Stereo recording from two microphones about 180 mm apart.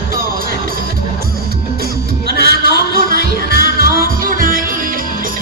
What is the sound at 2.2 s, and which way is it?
Music, 60° right (ahead or behind).